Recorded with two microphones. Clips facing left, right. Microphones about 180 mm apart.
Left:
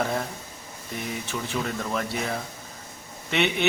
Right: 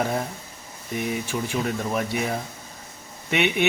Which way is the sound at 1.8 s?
15° right (ahead or behind).